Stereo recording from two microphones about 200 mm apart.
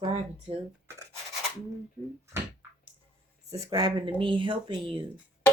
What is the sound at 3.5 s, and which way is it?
Speech, 20° right (ahead or behind).